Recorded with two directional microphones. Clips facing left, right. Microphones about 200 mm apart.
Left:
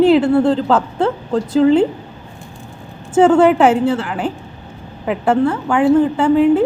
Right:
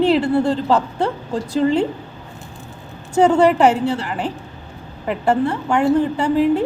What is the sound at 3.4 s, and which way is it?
Speech, centre (ahead or behind).